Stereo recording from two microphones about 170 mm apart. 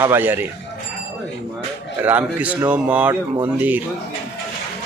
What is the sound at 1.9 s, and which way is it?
Speech, 10° right (ahead or behind).